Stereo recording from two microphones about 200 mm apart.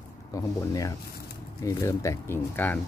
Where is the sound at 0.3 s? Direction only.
15° left (ahead or behind).